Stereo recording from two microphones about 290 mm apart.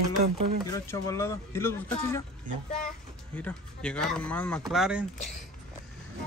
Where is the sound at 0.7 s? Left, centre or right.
Centre.